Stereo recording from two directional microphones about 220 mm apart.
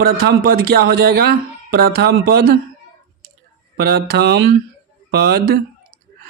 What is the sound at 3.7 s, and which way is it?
Speech, 45° right (ahead or behind).